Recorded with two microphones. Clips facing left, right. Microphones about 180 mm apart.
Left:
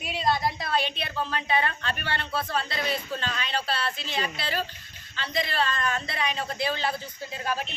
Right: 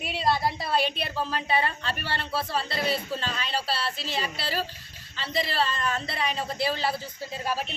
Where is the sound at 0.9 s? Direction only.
35° right (ahead or behind).